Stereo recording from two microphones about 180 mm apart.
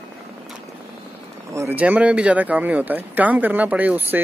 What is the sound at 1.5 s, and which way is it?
Speech, 15° right (ahead or behind).